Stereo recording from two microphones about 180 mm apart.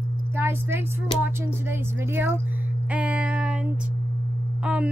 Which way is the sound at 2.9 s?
5° right (ahead or behind).